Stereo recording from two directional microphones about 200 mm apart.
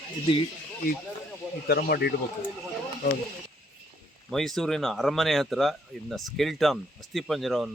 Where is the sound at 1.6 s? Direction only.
50° left (ahead or behind).